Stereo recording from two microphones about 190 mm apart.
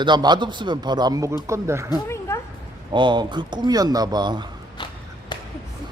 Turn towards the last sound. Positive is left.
turn(degrees=-20)  # may be behind; listen again after turning